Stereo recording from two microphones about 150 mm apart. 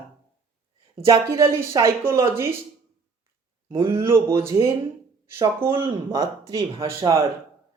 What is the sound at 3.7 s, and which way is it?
Speech, 35° right (ahead or behind).